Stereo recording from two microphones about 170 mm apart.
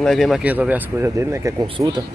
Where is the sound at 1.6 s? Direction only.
25° right (ahead or behind).